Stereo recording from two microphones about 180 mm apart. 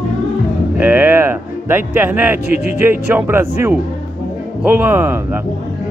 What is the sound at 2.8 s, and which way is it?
Speech, 10° right (ahead or behind).